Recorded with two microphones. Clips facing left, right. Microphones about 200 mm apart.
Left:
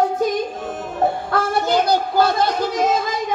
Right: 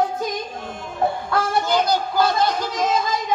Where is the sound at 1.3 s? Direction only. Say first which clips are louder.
Left 2 dB; 60° left (ahead or behind).